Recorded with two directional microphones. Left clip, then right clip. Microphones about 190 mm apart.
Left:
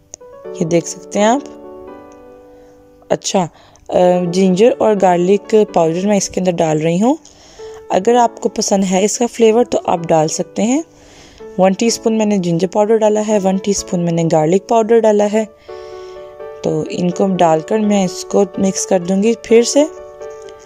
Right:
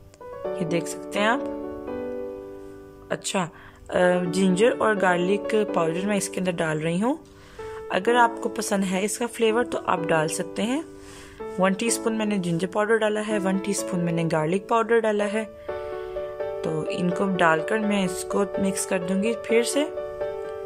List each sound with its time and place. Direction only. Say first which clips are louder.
0.6 s speech: left 13 dB; 30° left (ahead or behind)
3.1 s speech: left 11 dB; 30° left (ahead or behind)
16.8 s speech: left 8 dB; 20° left (ahead or behind)